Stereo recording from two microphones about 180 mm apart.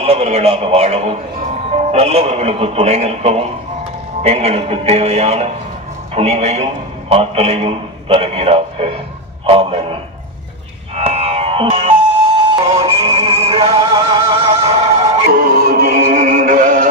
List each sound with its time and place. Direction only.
0.0 s a man's voice: 35° right (ahead or behind)
11.0 s music: 35° right (ahead or behind)
15.3 s music: 55° right (ahead or behind)